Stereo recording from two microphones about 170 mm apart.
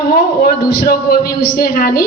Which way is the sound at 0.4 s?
60° left (ahead or behind).